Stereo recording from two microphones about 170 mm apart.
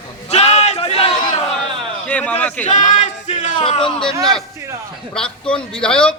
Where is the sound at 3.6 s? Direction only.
30° left (ahead or behind).